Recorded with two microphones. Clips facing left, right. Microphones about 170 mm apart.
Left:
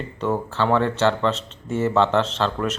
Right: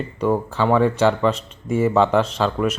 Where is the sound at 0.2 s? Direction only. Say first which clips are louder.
Right 3 dB; 10° right (ahead or behind).